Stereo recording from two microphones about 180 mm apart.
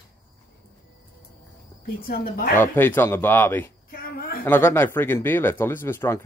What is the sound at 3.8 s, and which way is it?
Speech, 55° left (ahead or behind).